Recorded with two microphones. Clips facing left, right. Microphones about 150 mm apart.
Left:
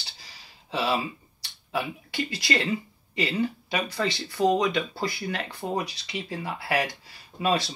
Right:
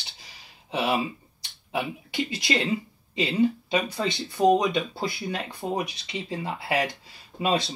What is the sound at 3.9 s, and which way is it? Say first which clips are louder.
Speech: even; 20° right (ahead or behind).